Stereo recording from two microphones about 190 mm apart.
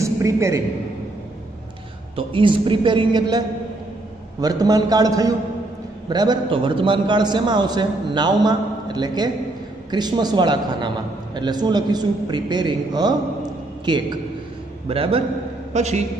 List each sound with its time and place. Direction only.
0.0 s a man's voice: 15° right (ahead or behind)
2.1 s a man's voice: 25° right (ahead or behind)